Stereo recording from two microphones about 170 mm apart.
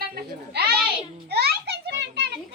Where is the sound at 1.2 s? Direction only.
70° right (ahead or behind); by 2.4 s 90° right.